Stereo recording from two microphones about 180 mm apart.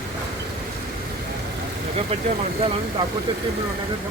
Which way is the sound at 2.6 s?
30° right (ahead or behind).